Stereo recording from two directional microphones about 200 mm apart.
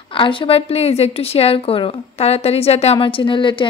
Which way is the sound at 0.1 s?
25° left (ahead or behind).